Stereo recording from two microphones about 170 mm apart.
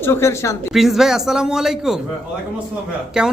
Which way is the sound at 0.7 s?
Centre (ahead or behind).